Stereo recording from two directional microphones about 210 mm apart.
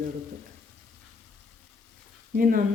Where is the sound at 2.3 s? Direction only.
40° right (ahead or behind).